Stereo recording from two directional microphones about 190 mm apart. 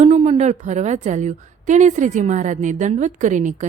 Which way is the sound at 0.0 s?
35° right (ahead or behind).